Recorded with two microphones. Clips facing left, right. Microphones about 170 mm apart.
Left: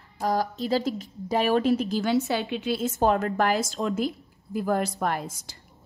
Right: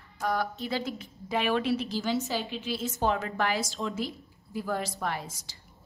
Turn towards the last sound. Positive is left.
turn(degrees=50)  # may be behind; listen again after turning